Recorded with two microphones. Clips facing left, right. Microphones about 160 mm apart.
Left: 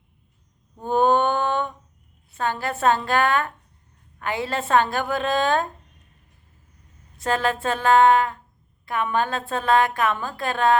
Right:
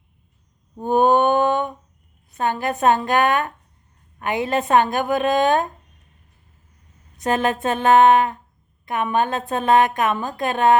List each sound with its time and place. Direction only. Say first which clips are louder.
0.8 s a sound: right 3 dB; 15° right (ahead or behind)
2.4 s a woman's voice: right 3 dB; 15° right (ahead or behind)
7.2 s a woman's voice: right 3 dB; 20° right (ahead or behind)